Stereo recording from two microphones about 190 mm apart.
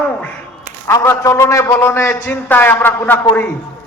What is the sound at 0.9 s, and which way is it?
A man's voice, 15° left (ahead or behind).